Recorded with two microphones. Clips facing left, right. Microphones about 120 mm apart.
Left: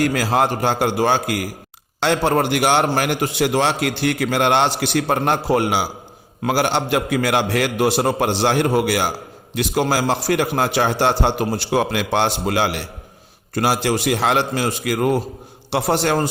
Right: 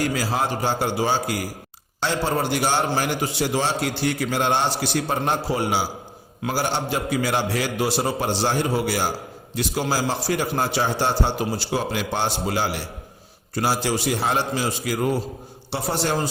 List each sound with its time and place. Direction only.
0.0 s a man's voice: 60° left (ahead or behind)